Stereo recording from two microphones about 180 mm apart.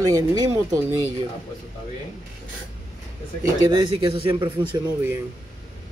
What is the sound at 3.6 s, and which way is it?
Speech, 25° right (ahead or behind).